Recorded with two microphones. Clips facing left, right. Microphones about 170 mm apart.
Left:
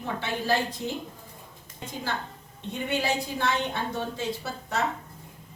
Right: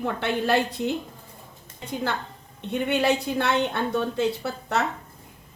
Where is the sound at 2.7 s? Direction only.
60° right (ahead or behind).